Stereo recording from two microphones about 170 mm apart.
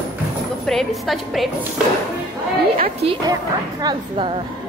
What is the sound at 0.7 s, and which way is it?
Speech, centre (ahead or behind).